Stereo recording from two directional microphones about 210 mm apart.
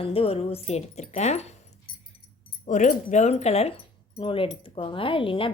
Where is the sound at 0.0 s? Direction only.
25° left (ahead or behind).